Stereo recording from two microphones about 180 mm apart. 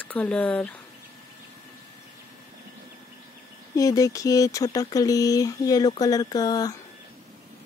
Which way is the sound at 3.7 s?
20° left (ahead or behind).